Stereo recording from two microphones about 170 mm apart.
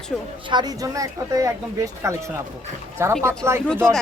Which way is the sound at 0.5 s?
20° right (ahead or behind).